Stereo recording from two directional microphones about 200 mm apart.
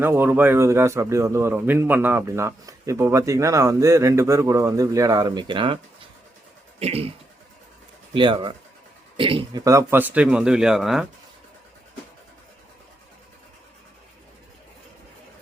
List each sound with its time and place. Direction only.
0.0 s speech: 10° right (ahead or behind); by 7.1 s 30° right (ahead or behind)
8.1 s speech: 25° right (ahead or behind); by 11.0 s centre (ahead or behind)